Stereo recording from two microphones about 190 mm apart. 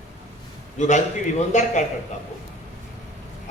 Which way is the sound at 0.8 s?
40° left (ahead or behind).